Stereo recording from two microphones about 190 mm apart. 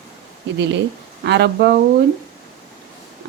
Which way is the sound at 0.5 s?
65° right (ahead or behind).